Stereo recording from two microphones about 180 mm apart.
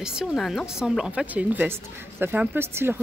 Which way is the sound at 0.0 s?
5° right (ahead or behind).